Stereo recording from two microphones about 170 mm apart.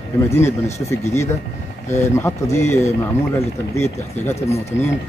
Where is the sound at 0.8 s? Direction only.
15° left (ahead or behind).